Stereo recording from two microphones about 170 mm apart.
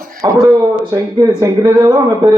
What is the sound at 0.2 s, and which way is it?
Speech, 25° right (ahead or behind).